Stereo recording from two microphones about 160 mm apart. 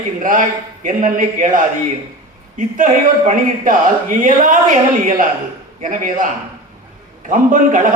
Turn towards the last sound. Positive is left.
turn(degrees=-55)  # may be behind; listen again after turning